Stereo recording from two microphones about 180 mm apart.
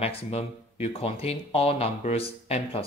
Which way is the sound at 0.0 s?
35° left (ahead or behind).